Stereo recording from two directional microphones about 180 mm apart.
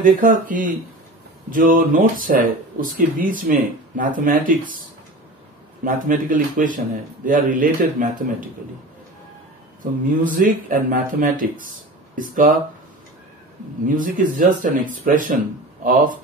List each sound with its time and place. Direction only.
0.0 s speech: 50° right (ahead or behind)
5.9 s speech: 50° right (ahead or behind)
10.2 s speech: 50° right (ahead or behind)
13.8 s speech: 50° right (ahead or behind)